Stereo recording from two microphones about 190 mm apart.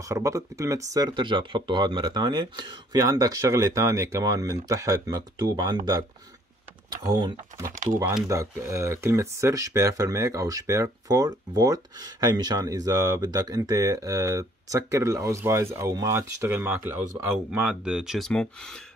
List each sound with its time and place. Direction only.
0.0 s speech: 15° right (ahead or behind)
6.9 s speech: 20° right (ahead or behind)
7.6 s speech: 45° right (ahead or behind)
8.0 s speech: 10° right (ahead or behind); by 18.8 s 5° left (ahead or behind)